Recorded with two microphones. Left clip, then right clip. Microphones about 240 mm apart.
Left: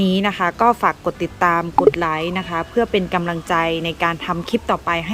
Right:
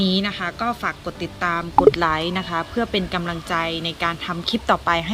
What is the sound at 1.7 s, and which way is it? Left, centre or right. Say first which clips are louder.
A woman's voice: even; centre.